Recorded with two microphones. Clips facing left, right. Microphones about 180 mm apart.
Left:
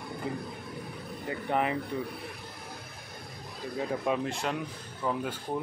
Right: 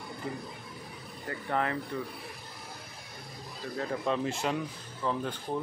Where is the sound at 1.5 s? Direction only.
15° left (ahead or behind).